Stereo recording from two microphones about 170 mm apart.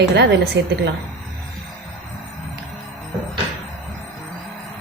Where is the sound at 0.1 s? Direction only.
85° right.